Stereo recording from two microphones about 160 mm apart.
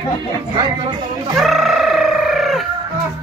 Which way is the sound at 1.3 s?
Centre (ahead or behind).